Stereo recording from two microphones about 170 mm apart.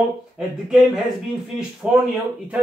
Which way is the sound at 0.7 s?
Centre (ahead or behind).